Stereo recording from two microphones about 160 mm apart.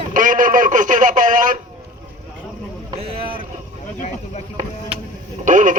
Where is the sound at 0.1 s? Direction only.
55° right (ahead or behind).